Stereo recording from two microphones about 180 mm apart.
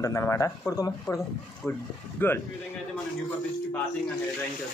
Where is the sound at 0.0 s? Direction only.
15° left (ahead or behind).